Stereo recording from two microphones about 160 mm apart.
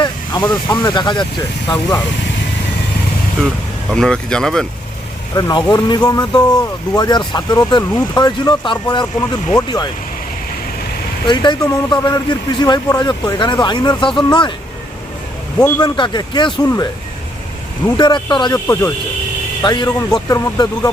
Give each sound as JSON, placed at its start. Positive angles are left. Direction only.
{"t": 0.3, "sound": "speech", "side_deg": 30}
{"t": 3.9, "sound": "speech", "side_deg": 5}
{"t": 5.3, "sound": "speech", "side_deg": 25}
{"t": 11.3, "sound": "speech", "side_deg": 30}
{"t": 15.5, "sound": "speech", "side_deg": 25}
{"t": 17.9, "sound": "speech", "side_deg": 30}